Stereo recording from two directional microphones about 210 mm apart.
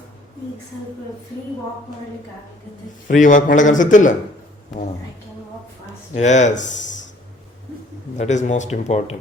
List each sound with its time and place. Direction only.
3.1 s a man's voice: 40° left (ahead or behind)
6.1 s a man's voice: 35° left (ahead or behind)
8.2 s a man's voice: 35° left (ahead or behind)